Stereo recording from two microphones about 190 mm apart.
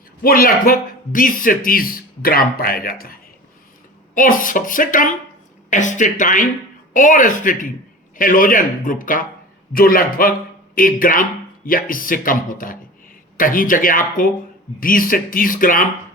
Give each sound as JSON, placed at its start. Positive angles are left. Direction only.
{"t": 0.2, "sound": "a man's voice", "side_deg": 50}